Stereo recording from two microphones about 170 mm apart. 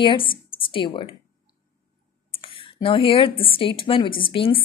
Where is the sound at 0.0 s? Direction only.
30° left (ahead or behind).